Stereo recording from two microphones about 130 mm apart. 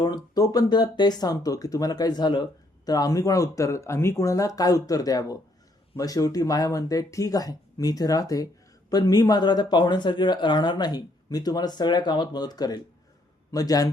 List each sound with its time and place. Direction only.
0.0 s speech: 30° left (ahead or behind)